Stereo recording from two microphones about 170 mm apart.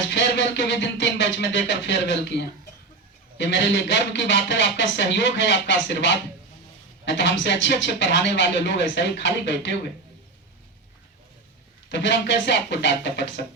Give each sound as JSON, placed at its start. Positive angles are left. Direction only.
{"t": 0.1, "sound": "music", "side_deg": 90}
{"t": 3.3, "sound": "speech", "side_deg": 90}
{"t": 11.9, "sound": "speech", "side_deg": 90}